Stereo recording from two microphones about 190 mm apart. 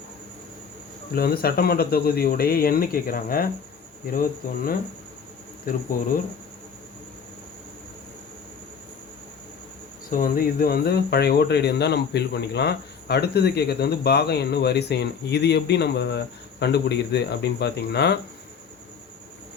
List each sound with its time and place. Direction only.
1.1 s speech: 55° left (ahead or behind)
10.1 s speech: 50° left (ahead or behind)